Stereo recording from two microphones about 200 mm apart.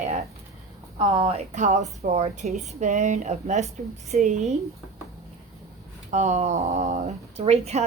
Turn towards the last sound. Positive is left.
turn(degrees=-30)  # may be behind; listen again after turning